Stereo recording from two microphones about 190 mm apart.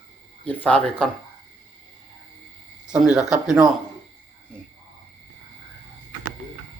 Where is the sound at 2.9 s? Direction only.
5° right (ahead or behind).